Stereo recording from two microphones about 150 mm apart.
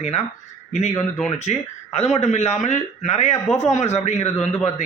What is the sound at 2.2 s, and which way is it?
A man's voice, 45° left (ahead or behind).